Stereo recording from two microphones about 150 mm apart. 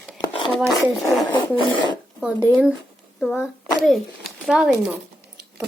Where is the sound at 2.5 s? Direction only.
10° right (ahead or behind).